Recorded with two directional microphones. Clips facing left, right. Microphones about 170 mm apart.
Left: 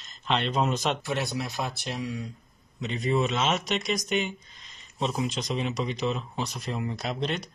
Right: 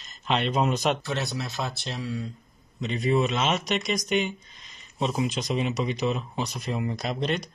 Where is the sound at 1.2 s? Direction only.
15° left (ahead or behind).